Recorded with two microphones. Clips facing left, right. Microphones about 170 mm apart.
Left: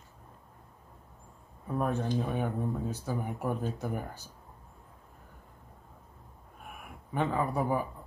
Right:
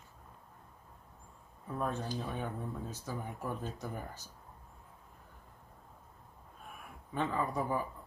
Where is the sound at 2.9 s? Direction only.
10° left (ahead or behind).